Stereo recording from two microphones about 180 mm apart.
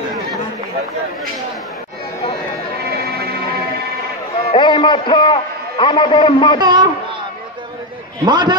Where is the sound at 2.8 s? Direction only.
60° right (ahead or behind).